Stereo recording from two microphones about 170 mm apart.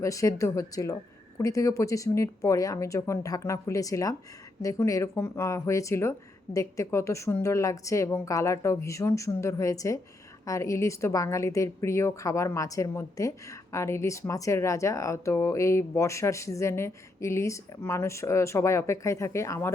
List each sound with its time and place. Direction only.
0.0 s a woman's voice: 20° left (ahead or behind)